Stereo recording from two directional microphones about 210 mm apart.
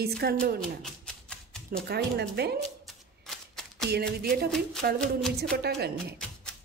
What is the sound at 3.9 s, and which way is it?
Speech, 50° right (ahead or behind).